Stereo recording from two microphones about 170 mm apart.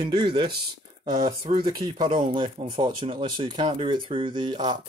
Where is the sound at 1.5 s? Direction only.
30° right (ahead or behind).